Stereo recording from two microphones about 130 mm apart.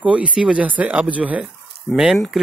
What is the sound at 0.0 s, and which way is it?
Speech, 10° right (ahead or behind).